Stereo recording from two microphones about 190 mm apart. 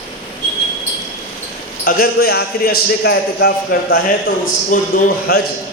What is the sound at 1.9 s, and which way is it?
A man's voice, 50° left (ahead or behind).